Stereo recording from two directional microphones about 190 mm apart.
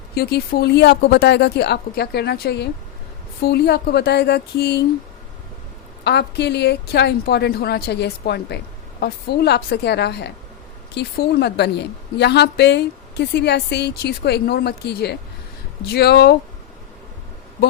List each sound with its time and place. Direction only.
0.1 s a woman's voice: 55° left (ahead or behind)
6.1 s a woman's voice: 60° left (ahead or behind)